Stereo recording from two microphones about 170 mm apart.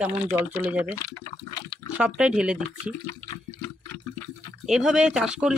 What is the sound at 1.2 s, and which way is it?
Liquid, 20° left (ahead or behind).